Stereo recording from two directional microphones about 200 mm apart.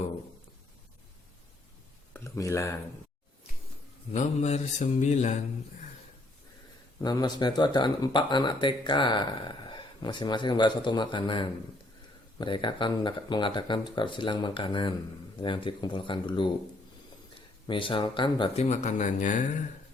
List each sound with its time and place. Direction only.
2.1 s a sound: 15° left (ahead or behind)
4.1 s mantra: 35° left (ahead or behind)
7.0 s speech: 20° left (ahead or behind)
17.7 s speech: 25° left (ahead or behind)